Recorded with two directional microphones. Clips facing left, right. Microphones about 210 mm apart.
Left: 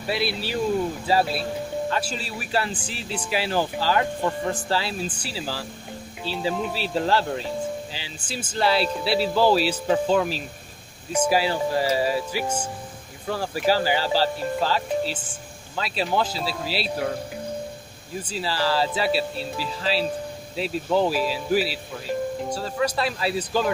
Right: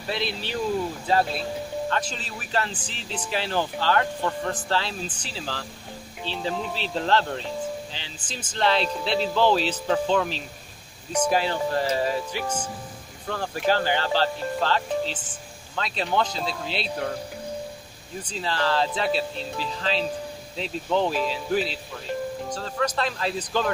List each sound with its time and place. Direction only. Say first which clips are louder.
0.1 s speech: left 3 dB; 10° left (ahead or behind)
18.2 s speech: left 1 dB; 5° left (ahead or behind)